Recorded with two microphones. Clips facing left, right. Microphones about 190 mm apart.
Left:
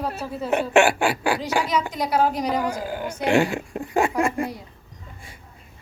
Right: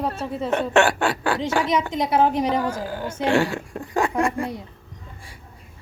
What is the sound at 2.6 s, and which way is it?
Speech, 15° left (ahead or behind).